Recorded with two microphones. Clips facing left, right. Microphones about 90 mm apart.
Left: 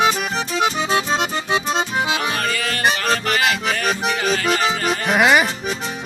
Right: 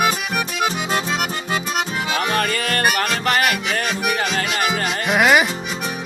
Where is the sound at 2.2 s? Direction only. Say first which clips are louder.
Right 2 dB; 45° right (ahead or behind).